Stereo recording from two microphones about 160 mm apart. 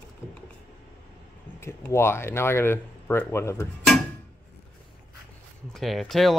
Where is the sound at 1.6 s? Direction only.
15° left (ahead or behind).